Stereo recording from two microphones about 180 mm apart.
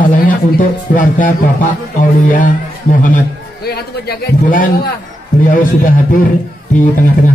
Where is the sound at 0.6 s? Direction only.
45° left (ahead or behind).